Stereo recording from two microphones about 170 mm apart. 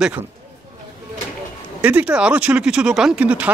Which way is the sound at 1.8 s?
10° right (ahead or behind).